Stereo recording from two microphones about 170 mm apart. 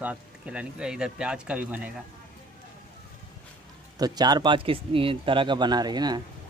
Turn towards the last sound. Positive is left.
turn(degrees=-25)  # may be behind; listen again after turning